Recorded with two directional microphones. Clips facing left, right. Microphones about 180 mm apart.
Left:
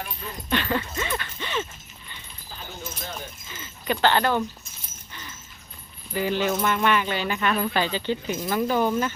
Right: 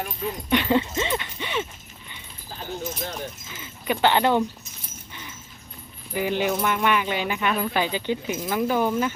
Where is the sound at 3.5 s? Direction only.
5° right (ahead or behind).